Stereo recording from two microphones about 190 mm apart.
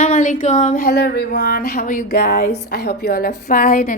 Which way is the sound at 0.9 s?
55° left (ahead or behind).